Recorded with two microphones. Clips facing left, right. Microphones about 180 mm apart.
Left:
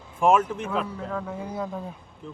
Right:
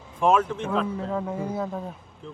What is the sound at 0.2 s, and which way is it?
Speech, 10° left (ahead or behind).